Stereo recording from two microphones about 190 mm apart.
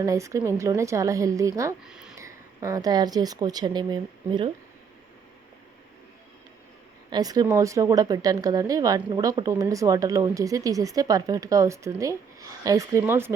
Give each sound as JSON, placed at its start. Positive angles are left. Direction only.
{"t": 0.0, "sound": "speech", "side_deg": -15}
{"t": 1.8, "sound": "speech", "side_deg": -5}
{"t": 2.1, "sound": "speech", "side_deg": -15}
{"t": 7.1, "sound": "speech", "side_deg": -20}